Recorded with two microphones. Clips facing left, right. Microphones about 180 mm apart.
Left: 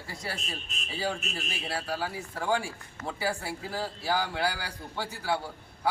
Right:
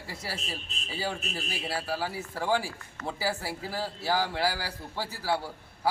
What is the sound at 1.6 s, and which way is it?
A man's voice, centre (ahead or behind).